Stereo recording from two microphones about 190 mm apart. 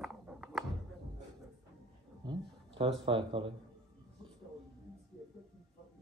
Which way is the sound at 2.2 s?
20° right (ahead or behind).